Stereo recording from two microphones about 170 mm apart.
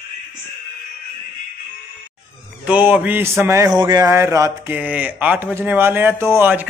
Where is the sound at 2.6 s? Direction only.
10° right (ahead or behind).